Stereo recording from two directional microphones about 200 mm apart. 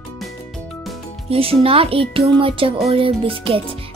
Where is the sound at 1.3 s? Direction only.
30° right (ahead or behind).